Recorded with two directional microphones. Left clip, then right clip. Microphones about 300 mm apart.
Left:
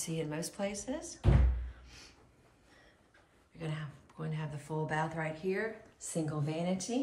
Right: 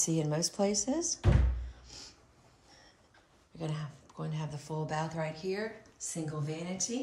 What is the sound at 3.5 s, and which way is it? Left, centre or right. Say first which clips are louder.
Speech: right 2 dB; centre.